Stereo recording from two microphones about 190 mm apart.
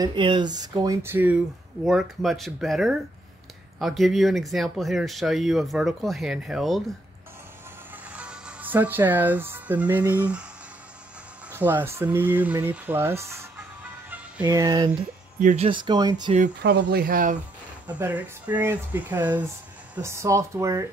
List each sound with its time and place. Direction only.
0.0 s speech: 25° right (ahead or behind)
1.9 s speech: centre (ahead or behind)
8.1 s speech: 5° right (ahead or behind)
11.5 s speech: 10° right (ahead or behind)
15.3 s speech: 40° right (ahead or behind); by 16.3 s 20° right (ahead or behind)
16.6 s speech: 55° right (ahead or behind)
17.9 s speech: 10° right (ahead or behind)